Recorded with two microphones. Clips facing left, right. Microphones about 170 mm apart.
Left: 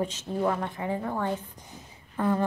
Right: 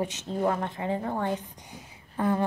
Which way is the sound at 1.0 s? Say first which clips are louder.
Even; 45° right (ahead or behind).